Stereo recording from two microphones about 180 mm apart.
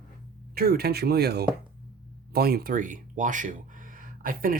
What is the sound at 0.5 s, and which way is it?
Speech, 60° right (ahead or behind).